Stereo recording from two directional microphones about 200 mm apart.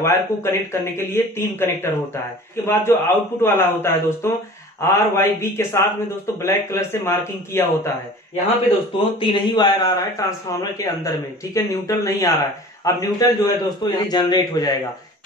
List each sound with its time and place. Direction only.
0.0 s speech: 10° left (ahead or behind)
9.2 s a man's voice: 25° left (ahead or behind)